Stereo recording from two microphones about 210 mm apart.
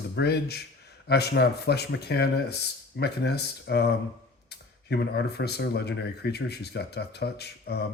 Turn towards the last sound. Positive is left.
turn(degrees=50)  # may be behind; listen again after turning